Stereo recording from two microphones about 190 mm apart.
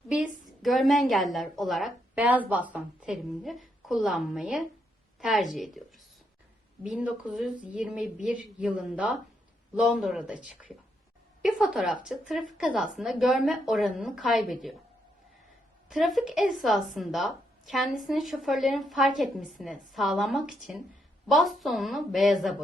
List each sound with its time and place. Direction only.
0.1 s a woman's voice: 5° right (ahead or behind)
6.8 s a woman's voice: 5° right (ahead or behind)
15.9 s a woman's voice: centre (ahead or behind)